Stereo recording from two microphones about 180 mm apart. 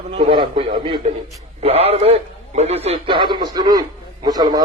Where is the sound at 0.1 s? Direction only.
30° right (ahead or behind).